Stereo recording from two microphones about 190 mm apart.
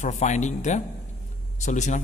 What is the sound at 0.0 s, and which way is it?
A man's voice, 40° left (ahead or behind).